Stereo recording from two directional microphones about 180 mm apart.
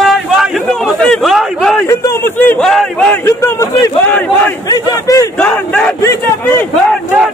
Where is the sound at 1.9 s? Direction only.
15° left (ahead or behind).